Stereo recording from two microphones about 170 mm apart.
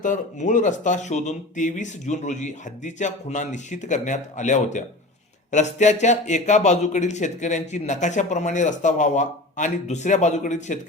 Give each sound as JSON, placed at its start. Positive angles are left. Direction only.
{"t": 0.0, "sound": "speech", "side_deg": 45}